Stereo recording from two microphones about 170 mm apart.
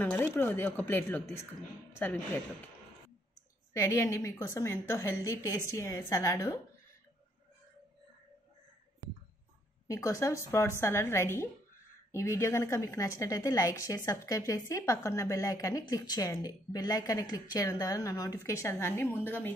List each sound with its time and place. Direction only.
0.0 s a woman's voice: 10° left (ahead or behind)
3.7 s a woman's voice: 15° left (ahead or behind)
9.8 s a woman's voice: 20° left (ahead or behind)